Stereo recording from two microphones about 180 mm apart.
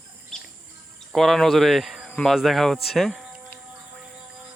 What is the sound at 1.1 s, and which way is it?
Speech, centre (ahead or behind).